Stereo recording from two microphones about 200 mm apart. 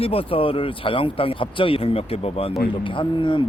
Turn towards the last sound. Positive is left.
turn(degrees=25)  # may be behind; listen again after turning